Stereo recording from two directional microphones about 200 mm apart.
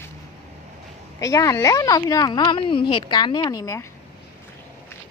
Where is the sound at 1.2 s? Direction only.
15° left (ahead or behind).